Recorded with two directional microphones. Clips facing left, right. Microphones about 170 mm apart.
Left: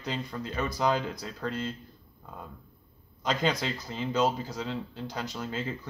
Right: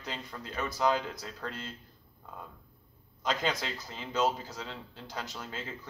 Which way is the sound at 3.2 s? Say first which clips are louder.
Left 3 dB; centre (ahead or behind).